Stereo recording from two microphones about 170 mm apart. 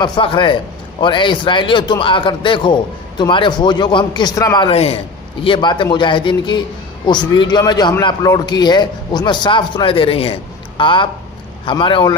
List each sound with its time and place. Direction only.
0.0 s speech: 30° left (ahead or behind)
4.6 s speech: 35° left (ahead or behind)